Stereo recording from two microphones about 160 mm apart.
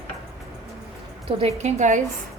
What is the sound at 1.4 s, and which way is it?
Speech, 45° right (ahead or behind).